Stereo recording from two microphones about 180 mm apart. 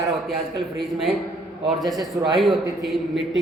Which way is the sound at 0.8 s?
Centre (ahead or behind).